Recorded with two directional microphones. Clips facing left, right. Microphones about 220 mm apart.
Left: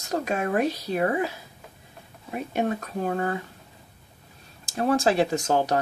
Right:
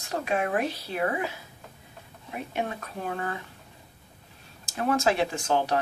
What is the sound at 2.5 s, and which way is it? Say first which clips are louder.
Speech: left 6 dB; 40° left (ahead or behind).